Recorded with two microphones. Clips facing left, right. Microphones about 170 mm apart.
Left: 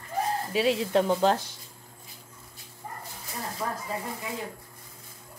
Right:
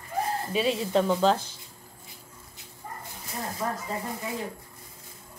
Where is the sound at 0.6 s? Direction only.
70° left (ahead or behind).